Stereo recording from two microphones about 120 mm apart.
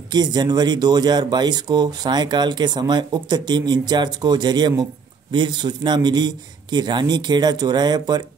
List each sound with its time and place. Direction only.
0.1 s speech: 35° right (ahead or behind)